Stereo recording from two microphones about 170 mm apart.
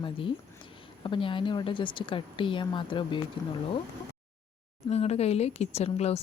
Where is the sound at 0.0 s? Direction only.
30° left (ahead or behind).